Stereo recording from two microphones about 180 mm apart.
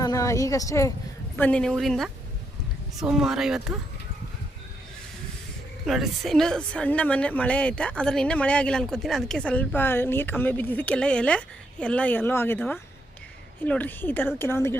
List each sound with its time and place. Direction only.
0.0 s speech: 20° left (ahead or behind)
1.4 s a woman's voice: 5° left (ahead or behind)
5.8 s a woman's voice: centre (ahead or behind)